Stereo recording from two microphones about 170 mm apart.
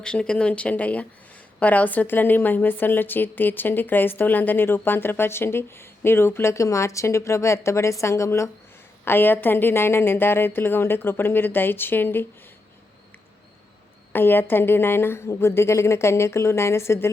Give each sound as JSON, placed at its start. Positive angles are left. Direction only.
{"t": 0.0, "sound": "a woman's voice", "side_deg": 5}
{"t": 14.1, "sound": "a woman's voice", "side_deg": 10}